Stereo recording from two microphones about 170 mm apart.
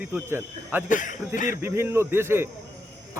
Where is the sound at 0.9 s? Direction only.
50° left (ahead or behind).